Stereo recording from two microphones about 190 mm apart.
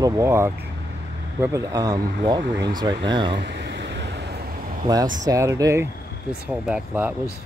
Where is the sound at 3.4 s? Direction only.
65° right (ahead or behind).